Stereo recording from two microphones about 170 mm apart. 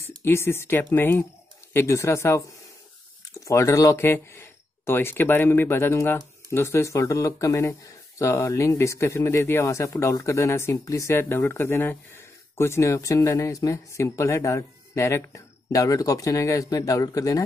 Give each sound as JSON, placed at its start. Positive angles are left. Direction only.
{"t": 0.0, "sound": "speech", "side_deg": 15}